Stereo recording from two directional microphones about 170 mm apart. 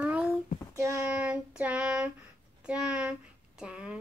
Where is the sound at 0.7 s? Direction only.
20° right (ahead or behind).